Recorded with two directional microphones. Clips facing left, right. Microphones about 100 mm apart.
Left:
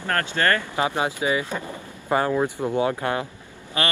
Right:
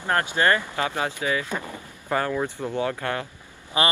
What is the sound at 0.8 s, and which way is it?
Speech, 20° left (ahead or behind).